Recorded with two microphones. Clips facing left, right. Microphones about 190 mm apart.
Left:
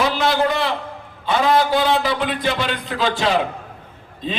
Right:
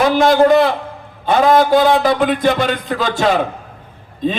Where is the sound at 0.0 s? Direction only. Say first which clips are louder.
Right 7 dB; 50° right (ahead or behind).